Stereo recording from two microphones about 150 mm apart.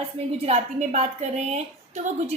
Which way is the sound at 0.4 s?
45° right (ahead or behind).